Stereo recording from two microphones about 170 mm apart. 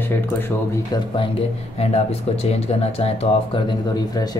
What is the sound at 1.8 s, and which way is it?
Speech, 35° left (ahead or behind).